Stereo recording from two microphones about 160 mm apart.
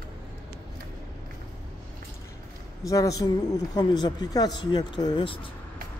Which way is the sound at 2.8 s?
20° left (ahead or behind).